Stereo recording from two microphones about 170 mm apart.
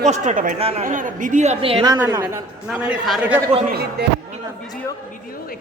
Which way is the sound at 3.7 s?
70° right (ahead or behind).